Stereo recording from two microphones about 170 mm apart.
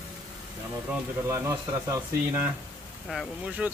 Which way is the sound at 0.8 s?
15° right (ahead or behind).